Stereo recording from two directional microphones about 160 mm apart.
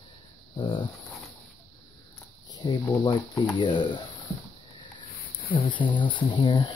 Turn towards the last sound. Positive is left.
turn(degrees=30)  # may be behind; listen again after turning